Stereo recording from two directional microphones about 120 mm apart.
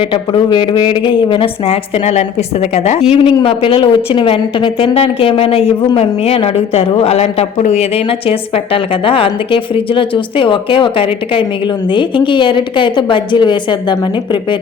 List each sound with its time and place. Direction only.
0.1 s a woman's voice: 45° left (ahead or behind); by 3.0 s 65° left (ahead or behind)
3.1 s a woman's voice: 45° left (ahead or behind)